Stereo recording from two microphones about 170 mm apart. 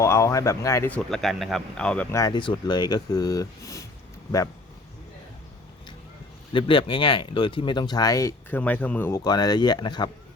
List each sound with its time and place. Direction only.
0.0 s speech: 15° left (ahead or behind)
0.9 s speech: centre (ahead or behind)
2.1 s speech: 25° left (ahead or behind)
6.5 s speech: 30° left (ahead or behind)